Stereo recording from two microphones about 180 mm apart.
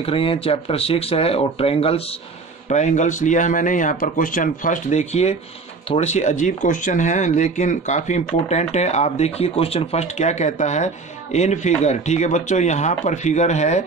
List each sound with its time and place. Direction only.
0.0 s speech: 30° left (ahead or behind)